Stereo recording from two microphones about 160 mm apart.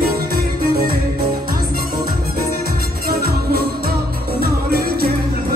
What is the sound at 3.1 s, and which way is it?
Music, 75° right (ahead or behind).